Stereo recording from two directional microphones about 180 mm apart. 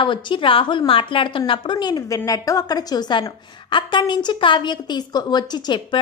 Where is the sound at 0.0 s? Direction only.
25° left (ahead or behind).